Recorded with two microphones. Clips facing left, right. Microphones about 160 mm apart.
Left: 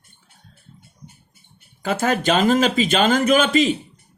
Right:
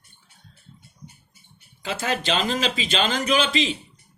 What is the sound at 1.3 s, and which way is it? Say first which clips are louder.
Speech: left 1 dB; 50° left (ahead or behind).